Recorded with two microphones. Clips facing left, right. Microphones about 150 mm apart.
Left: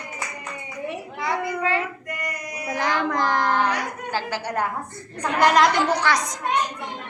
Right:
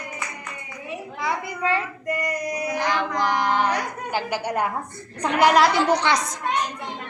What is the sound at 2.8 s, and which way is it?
Child singing, 15° right (ahead or behind).